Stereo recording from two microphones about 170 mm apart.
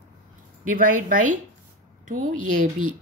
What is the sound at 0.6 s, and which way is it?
Speech, 50° right (ahead or behind).